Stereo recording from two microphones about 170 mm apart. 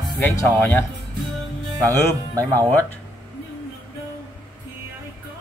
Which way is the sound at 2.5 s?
10° left (ahead or behind).